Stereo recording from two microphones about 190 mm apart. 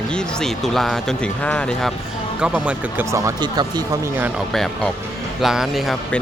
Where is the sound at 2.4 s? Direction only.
10° right (ahead or behind).